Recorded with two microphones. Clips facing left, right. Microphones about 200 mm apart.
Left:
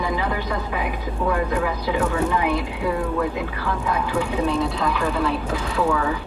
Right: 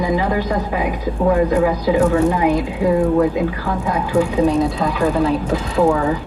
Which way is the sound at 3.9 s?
40° right (ahead or behind).